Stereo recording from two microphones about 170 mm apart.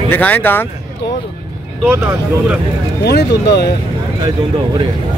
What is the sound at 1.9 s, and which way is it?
Speech, 10° right (ahead or behind).